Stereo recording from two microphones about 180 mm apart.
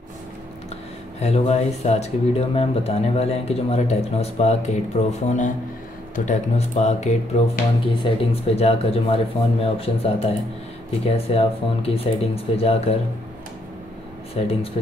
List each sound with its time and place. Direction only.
1.2 s speech: 35° left (ahead or behind)
14.3 s speech: 35° left (ahead or behind)